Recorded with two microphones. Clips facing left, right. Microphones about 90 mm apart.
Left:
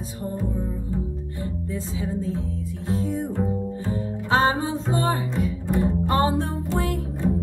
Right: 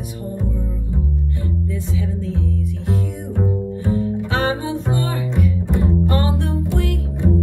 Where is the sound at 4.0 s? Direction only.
25° left (ahead or behind).